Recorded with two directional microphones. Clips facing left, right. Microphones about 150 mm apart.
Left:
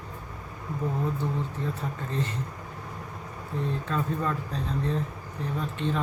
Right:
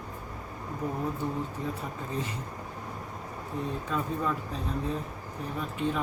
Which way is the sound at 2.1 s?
10° right (ahead or behind).